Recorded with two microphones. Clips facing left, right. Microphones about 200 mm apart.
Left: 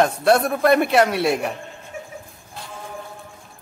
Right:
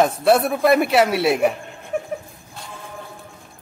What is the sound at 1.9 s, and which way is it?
Dog, 60° right (ahead or behind).